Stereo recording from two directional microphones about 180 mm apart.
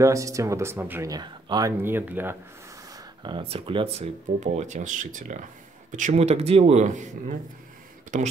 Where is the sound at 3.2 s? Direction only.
30° right (ahead or behind).